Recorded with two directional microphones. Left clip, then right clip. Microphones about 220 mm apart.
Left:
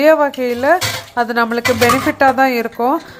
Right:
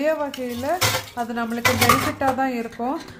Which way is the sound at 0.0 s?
25° left (ahead or behind).